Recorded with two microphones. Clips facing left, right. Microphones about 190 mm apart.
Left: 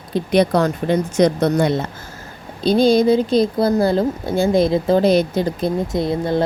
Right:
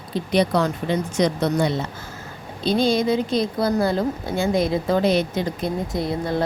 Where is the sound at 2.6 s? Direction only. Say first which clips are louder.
Left 6 dB; 35° left (ahead or behind).